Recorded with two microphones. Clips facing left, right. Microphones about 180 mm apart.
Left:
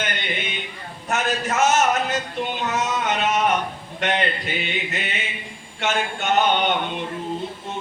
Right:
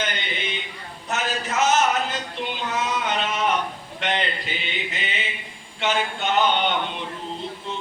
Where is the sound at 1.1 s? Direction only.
50° left (ahead or behind).